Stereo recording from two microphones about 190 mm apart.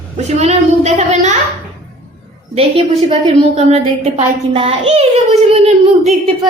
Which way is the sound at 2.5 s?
30° right (ahead or behind).